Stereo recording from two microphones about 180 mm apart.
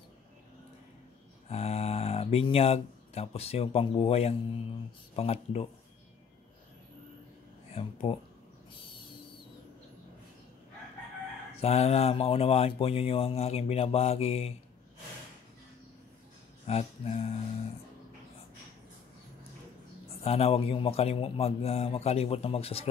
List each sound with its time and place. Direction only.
1.5 s speech: 35° left (ahead or behind)
7.7 s speech: 30° left (ahead or behind)
11.5 s speech: 35° left (ahead or behind)
16.6 s speech: 35° left (ahead or behind)
20.1 s speech: 35° left (ahead or behind)